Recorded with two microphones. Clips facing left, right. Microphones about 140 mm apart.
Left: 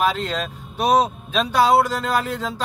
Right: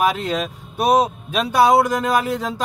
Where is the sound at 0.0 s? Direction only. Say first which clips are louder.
Right 2 dB; 10° right (ahead or behind).